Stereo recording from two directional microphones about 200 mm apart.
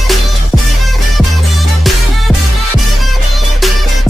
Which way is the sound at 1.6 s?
Centre (ahead or behind).